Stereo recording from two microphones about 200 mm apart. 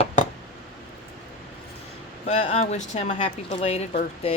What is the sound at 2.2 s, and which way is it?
Speech, 30° left (ahead or behind).